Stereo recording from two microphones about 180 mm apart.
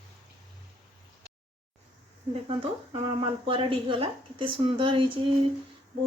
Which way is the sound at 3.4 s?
30° right (ahead or behind).